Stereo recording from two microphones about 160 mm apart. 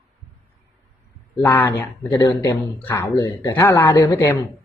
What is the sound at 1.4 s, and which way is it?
Speech, 15° left (ahead or behind).